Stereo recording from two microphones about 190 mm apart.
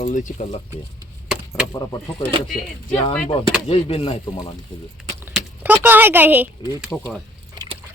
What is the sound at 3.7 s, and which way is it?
Speech, 30° left (ahead or behind).